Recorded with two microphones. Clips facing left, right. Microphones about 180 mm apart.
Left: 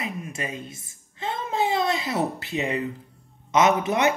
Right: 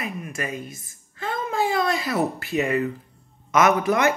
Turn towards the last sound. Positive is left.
turn(degrees=20)  # may be behind; listen again after turning